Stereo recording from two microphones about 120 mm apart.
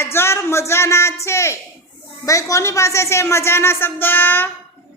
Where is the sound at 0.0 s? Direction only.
20° left (ahead or behind).